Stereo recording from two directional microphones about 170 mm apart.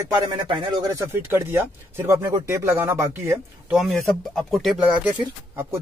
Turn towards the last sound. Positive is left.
turn(degrees=-15)  # may be behind; listen again after turning